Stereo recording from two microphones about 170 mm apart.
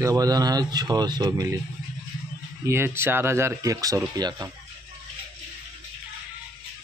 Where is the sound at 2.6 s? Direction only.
15° right (ahead or behind).